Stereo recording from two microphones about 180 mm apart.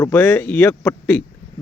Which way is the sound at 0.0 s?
15° left (ahead or behind).